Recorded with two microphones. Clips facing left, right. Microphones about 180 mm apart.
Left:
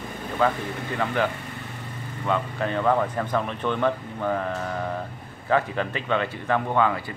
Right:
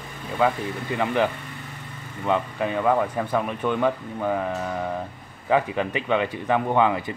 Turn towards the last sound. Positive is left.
turn(degrees=-15)  # may be behind; listen again after turning